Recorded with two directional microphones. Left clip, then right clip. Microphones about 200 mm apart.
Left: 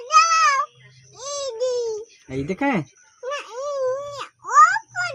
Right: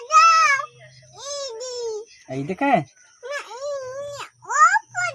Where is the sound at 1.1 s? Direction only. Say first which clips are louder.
Left 3 dB; 15° right (ahead or behind).